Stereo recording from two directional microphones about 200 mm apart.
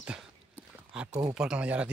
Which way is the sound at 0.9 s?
5° right (ahead or behind).